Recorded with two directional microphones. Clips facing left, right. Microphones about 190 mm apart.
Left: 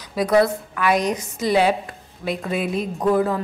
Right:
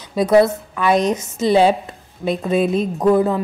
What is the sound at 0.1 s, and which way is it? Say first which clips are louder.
Speech: right 4 dB; 25° right (ahead or behind).